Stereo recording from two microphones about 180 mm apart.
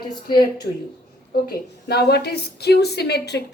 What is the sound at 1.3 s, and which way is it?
A woman's voice, 60° left (ahead or behind).